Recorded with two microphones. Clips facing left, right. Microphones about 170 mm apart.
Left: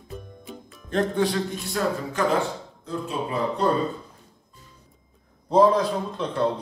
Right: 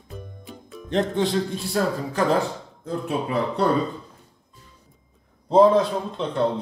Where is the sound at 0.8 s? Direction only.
20° right (ahead or behind).